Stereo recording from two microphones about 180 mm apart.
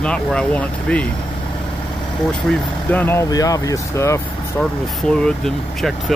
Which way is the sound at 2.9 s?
10° left (ahead or behind).